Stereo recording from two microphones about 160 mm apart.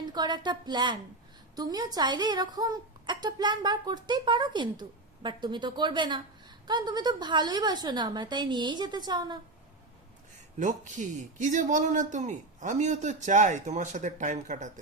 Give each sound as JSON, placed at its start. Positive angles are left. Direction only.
{"t": 0.1, "sound": "a woman's voice", "side_deg": -25}
{"t": 10.6, "sound": "speech", "side_deg": -50}